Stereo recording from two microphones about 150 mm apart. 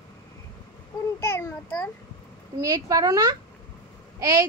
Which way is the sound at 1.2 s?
15° left (ahead or behind).